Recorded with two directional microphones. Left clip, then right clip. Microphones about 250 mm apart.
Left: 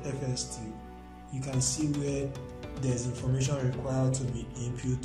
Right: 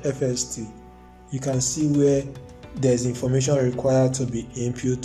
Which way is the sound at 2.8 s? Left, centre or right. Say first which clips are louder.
Right 14 dB; right.